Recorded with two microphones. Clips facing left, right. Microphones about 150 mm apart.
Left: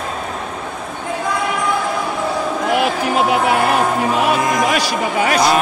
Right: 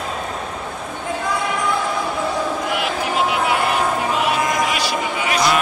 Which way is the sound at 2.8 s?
45° left (ahead or behind).